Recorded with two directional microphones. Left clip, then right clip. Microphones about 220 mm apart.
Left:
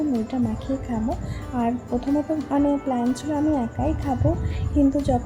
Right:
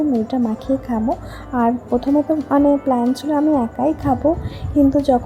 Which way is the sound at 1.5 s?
15° right (ahead or behind).